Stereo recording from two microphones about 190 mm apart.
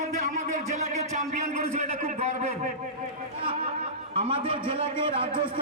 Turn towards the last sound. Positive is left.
turn(degrees=-30)  # may be behind; listen again after turning